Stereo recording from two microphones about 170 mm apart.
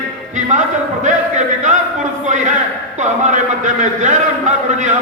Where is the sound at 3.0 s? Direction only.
45° right (ahead or behind).